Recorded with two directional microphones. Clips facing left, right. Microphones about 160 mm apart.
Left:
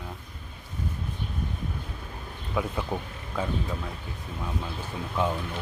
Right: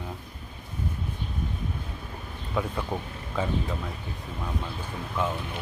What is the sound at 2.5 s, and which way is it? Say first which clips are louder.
Speech: even; centre (ahead or behind).